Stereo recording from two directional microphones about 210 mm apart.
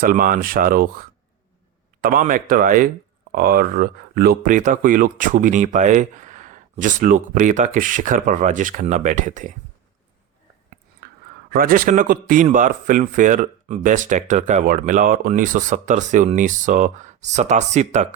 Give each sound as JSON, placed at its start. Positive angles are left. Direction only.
{"t": 0.0, "sound": "speech", "side_deg": -40}
{"t": 11.0, "sound": "a sound", "side_deg": -50}
{"t": 11.5, "sound": "speech", "side_deg": -45}